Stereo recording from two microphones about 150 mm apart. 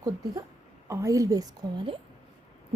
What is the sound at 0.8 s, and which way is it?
A woman's voice, 20° right (ahead or behind).